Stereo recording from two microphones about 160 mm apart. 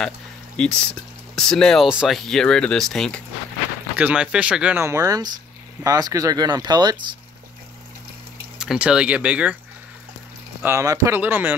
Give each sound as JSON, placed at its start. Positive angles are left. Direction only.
{"t": 0.6, "sound": "speech", "side_deg": 5}
{"t": 3.9, "sound": "speech", "side_deg": -10}
{"t": 8.5, "sound": "speech", "side_deg": -5}
{"t": 10.6, "sound": "speech", "side_deg": -20}